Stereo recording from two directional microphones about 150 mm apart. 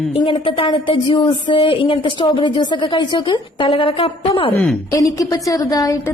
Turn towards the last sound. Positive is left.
turn(degrees=25)  # may be behind; listen again after turning